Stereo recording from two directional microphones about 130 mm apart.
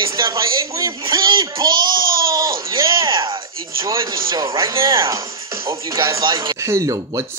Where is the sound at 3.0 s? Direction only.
40° right (ahead or behind).